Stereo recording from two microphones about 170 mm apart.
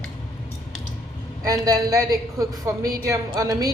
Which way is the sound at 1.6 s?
20° right (ahead or behind).